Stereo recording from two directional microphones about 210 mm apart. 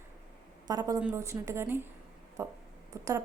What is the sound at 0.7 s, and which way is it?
A woman's voice, 20° right (ahead or behind).